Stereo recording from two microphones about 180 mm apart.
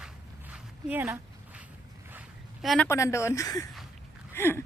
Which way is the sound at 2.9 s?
15° left (ahead or behind).